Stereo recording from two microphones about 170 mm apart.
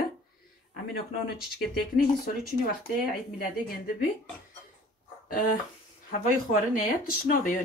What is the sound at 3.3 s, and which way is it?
Speech, 60° left (ahead or behind).